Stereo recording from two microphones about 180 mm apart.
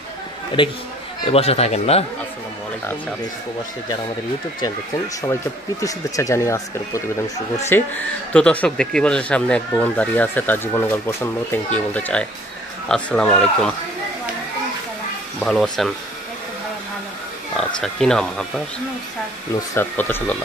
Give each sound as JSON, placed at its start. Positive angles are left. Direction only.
{"t": 0.6, "sound": "a man's voice", "side_deg": 30}
{"t": 5.2, "sound": "speech", "side_deg": 15}
{"t": 15.4, "sound": "speech", "side_deg": 5}
{"t": 17.6, "sound": "speech", "side_deg": 0}
{"t": 19.7, "sound": "speech", "side_deg": 10}